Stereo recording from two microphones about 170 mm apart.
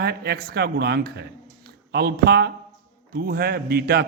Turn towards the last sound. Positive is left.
turn(degrees=-70)  # may be behind; listen again after turning